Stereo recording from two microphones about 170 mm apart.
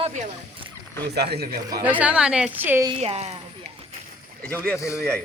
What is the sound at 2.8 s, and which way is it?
Speech, 35° right (ahead or behind).